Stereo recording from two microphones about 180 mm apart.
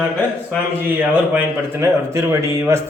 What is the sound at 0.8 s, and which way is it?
A man's voice, 10° right (ahead or behind).